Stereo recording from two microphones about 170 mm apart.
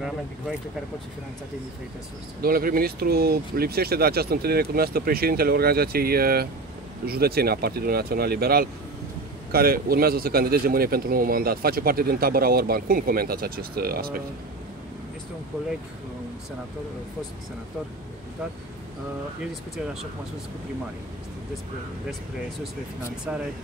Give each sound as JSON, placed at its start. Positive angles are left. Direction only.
{"t": 2.4, "sound": "speech", "side_deg": -60}